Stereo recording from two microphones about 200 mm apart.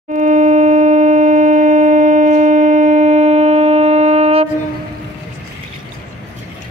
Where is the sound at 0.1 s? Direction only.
40° right (ahead or behind).